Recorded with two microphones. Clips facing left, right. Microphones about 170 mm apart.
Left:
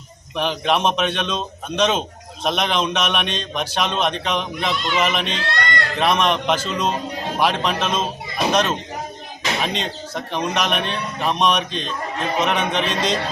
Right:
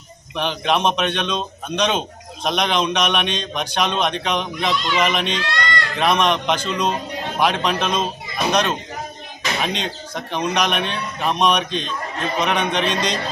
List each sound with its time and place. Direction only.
0.3 s a man's voice: 5° left (ahead or behind)
5.5 s a sound: 55° left (ahead or behind)
6.0 s a man's voice: centre (ahead or behind)
9.6 s a man's voice: centre (ahead or behind)